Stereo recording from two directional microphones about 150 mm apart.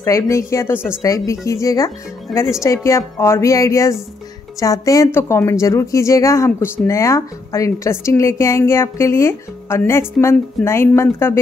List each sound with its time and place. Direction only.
0.0 s a woman's voice: 20° left (ahead or behind)
2.3 s speech: centre (ahead or behind)
2.6 s a woman's voice: 20° left (ahead or behind)